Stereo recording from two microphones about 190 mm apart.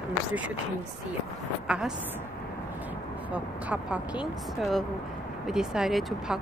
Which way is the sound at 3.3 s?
5° right (ahead or behind).